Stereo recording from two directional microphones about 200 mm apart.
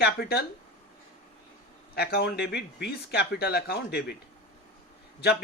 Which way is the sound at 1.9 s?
50° left (ahead or behind).